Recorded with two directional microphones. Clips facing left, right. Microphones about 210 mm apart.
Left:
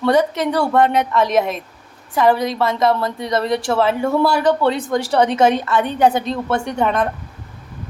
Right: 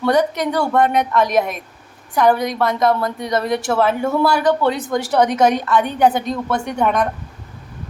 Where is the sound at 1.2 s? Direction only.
25° left (ahead or behind).